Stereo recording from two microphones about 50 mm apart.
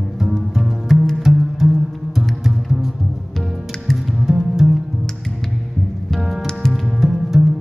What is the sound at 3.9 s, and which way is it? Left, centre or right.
Music, centre.